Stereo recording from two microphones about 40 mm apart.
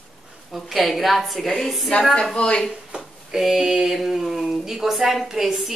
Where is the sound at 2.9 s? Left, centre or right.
Centre.